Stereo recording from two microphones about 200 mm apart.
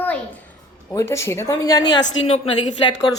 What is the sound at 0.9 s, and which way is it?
Speech, 15° left (ahead or behind).